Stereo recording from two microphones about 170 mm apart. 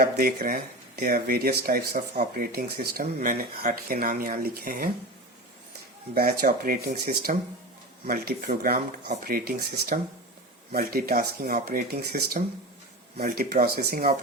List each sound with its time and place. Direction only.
0.0 s speech: 65° right (ahead or behind)
6.1 s speech: 60° right (ahead or behind)